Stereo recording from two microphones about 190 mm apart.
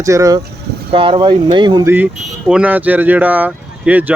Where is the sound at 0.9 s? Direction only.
25° right (ahead or behind).